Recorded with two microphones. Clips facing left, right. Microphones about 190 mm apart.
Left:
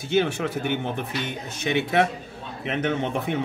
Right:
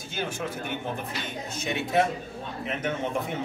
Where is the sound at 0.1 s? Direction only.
70° left (ahead or behind).